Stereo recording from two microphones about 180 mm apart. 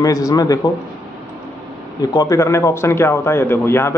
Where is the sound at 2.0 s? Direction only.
20° left (ahead or behind).